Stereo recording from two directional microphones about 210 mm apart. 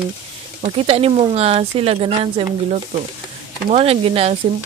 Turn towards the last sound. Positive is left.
turn(degrees=-30)  # may be behind; listen again after turning